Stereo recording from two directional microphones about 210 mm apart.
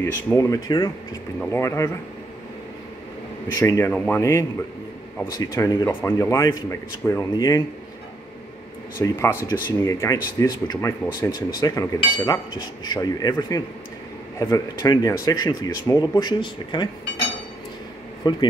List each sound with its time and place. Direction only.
0.0 s speech: 15° left (ahead or behind)
3.5 s speech: 15° left (ahead or behind)
9.0 s speech: 15° left (ahead or behind)
18.3 s speech: 20° left (ahead or behind)